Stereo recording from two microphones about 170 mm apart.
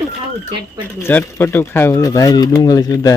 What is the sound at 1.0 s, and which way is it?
Speech, 10° left (ahead or behind).